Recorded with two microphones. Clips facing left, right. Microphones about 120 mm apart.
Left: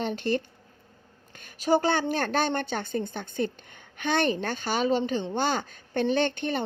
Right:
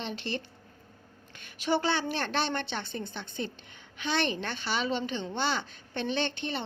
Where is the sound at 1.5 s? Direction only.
40° left (ahead or behind).